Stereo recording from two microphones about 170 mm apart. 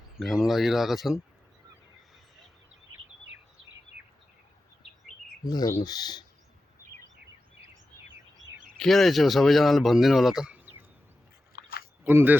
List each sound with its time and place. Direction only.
0.2 s speech: centre (ahead or behind)
5.5 s speech: 20° left (ahead or behind)
8.8 s speech: centre (ahead or behind)
11.5 s chewing: 70° left (ahead or behind)
12.0 s speech: 10° right (ahead or behind)